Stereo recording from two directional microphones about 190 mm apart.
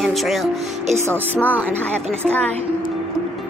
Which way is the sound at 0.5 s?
35° right (ahead or behind).